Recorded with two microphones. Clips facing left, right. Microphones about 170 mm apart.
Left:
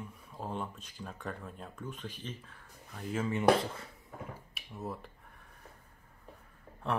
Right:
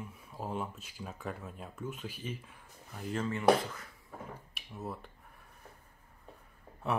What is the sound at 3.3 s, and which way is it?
Speech, 30° left (ahead or behind).